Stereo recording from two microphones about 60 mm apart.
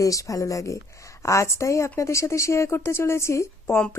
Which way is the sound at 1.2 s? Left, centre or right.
Left.